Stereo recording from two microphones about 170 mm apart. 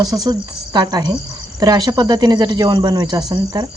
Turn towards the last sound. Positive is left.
turn(degrees=-25)  # may be behind; listen again after turning